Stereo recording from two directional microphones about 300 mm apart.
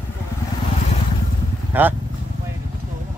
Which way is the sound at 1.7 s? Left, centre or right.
Centre.